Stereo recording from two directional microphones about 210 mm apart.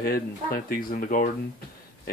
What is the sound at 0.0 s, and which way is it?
Speech, 45° left (ahead or behind).